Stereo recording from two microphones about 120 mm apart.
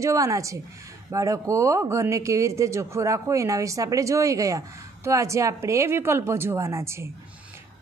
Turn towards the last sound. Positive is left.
turn(degrees=-20)  # may be behind; listen again after turning